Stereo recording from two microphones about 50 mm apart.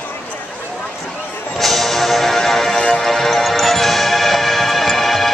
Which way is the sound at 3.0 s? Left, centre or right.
Centre.